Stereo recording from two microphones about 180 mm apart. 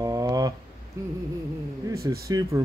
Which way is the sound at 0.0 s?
20° right (ahead or behind).